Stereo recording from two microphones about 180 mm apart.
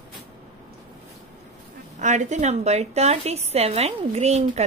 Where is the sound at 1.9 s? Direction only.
40° right (ahead or behind).